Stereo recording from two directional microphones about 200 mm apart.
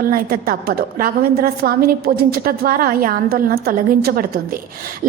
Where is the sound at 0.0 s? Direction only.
45° right (ahead or behind).